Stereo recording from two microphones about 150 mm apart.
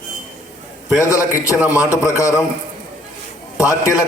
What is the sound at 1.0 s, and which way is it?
A man's voice, 20° left (ahead or behind).